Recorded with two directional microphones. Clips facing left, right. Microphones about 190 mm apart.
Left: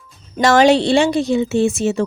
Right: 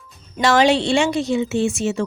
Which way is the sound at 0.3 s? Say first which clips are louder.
Left 4 dB; 45° left (ahead or behind).